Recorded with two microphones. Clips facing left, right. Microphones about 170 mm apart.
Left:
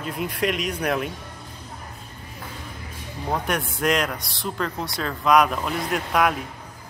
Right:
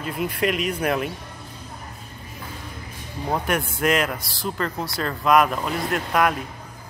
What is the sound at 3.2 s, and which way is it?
Speech, 5° right (ahead or behind).